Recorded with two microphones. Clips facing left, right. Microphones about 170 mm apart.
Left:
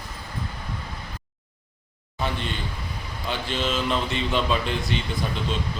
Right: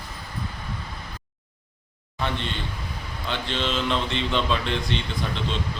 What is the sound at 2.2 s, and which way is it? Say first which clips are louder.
A man's voice: even; 5° left (ahead or behind).